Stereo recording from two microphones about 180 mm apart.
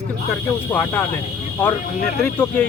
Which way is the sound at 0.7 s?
10° left (ahead or behind).